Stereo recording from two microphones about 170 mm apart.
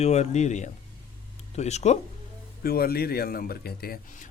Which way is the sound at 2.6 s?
65° left (ahead or behind).